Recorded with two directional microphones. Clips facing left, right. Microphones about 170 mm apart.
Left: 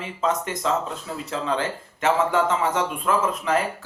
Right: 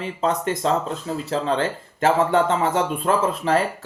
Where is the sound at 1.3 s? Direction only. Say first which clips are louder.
Right 3 dB; 35° right (ahead or behind).